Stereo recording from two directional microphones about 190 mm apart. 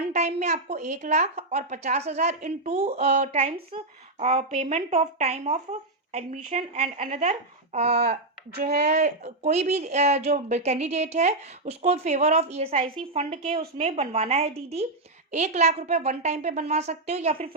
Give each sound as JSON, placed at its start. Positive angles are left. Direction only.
{"t": 0.1, "sound": "speech", "side_deg": -35}
{"t": 8.5, "sound": "speech", "side_deg": -55}
{"t": 8.9, "sound": "speech", "side_deg": -35}